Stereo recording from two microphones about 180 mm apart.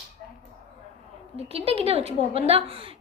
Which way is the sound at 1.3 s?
35° right (ahead or behind).